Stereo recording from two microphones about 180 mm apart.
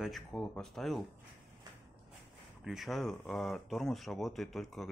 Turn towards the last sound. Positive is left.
turn(degrees=0)  # may be behind; listen again after turning